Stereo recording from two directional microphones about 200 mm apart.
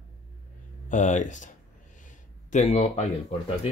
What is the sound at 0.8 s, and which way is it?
Speech, 35° left (ahead or behind).